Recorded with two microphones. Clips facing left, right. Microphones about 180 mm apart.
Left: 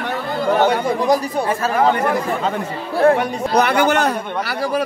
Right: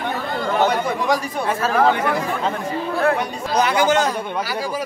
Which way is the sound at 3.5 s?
60° left (ahead or behind).